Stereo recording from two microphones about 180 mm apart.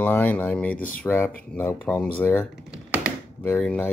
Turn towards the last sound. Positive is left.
turn(degrees=10)  # may be behind; listen again after turning